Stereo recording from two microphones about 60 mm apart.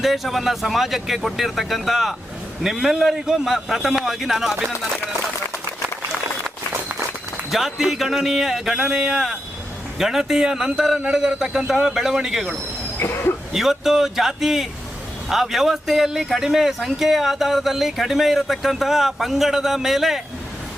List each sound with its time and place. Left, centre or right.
0.0 s speech: centre
7.5 s speech: centre
13.0 s speech: left
13.5 s speech: centre